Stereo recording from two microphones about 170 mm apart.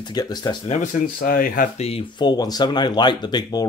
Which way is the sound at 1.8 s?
35° left (ahead or behind).